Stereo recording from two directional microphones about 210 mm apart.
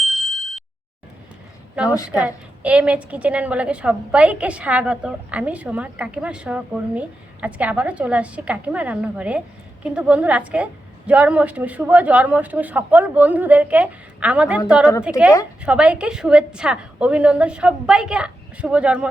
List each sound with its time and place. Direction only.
0.0 s ding: centre (ahead or behind)
2.2 s a woman's voice: 5° right (ahead or behind)